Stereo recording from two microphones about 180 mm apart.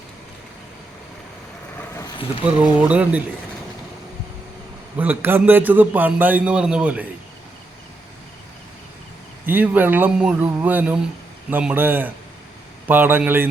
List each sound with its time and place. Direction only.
2.0 s a sound: 20° left (ahead or behind)
2.7 s a man's voice: 10° right (ahead or behind)
4.9 s a man's voice: 10° right (ahead or behind)
9.5 s a man's voice: 10° right (ahead or behind)